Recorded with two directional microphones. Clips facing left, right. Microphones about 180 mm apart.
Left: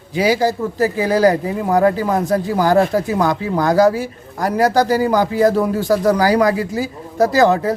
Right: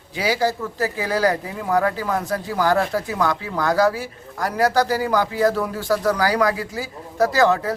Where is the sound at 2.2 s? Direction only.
40° left (ahead or behind).